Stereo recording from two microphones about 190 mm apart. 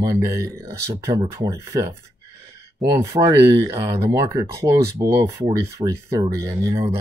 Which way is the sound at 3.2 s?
30° right (ahead or behind).